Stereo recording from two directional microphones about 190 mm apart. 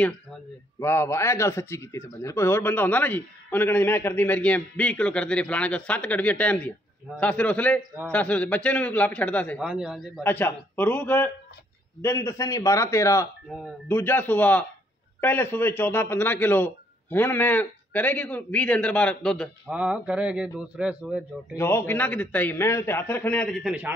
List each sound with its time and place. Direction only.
0.7 s speech: 15° left (ahead or behind)
9.6 s speech: 5° right (ahead or behind)
10.2 s speech: 10° left (ahead or behind); by 21.5 s 5° right (ahead or behind)
21.5 s speech: 10° left (ahead or behind); by 23.9 s 5° right (ahead or behind)